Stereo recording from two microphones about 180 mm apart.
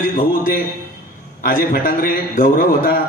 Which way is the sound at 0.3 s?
55° left (ahead or behind).